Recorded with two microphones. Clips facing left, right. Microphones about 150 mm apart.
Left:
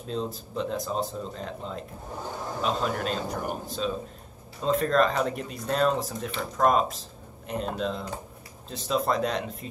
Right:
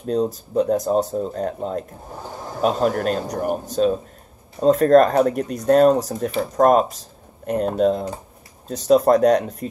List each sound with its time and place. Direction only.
0.0 s speech: 45° right (ahead or behind)